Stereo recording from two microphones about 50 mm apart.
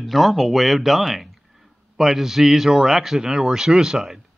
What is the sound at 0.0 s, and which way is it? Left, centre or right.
Speech, centre.